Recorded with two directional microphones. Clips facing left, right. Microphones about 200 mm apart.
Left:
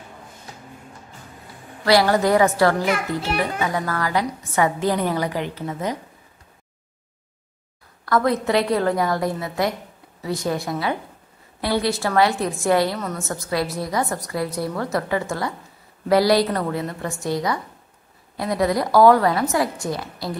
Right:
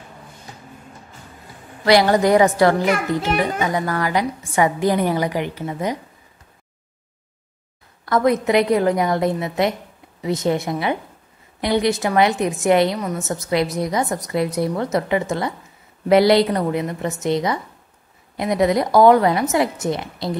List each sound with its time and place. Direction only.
1.9 s a woman's voice: 20° right (ahead or behind)
8.0 s a woman's voice: 20° right (ahead or behind)